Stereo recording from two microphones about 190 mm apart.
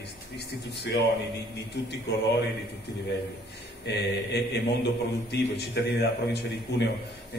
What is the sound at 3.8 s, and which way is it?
A man's voice, 65° left (ahead or behind).